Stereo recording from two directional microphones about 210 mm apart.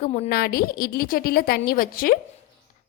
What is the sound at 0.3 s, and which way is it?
A woman's voice, 45° left (ahead or behind).